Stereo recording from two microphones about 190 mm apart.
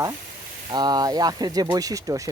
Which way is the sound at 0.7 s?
20° right (ahead or behind).